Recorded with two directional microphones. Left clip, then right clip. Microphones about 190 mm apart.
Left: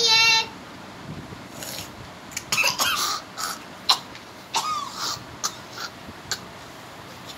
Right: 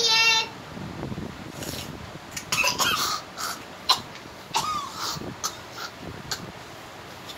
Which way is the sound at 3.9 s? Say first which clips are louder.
Left 1 dB; 15° right (ahead or behind).